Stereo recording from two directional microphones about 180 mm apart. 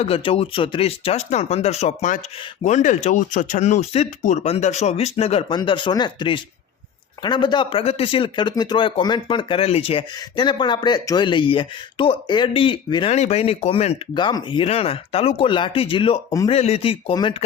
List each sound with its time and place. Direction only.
0.0 s speech: 35° left (ahead or behind)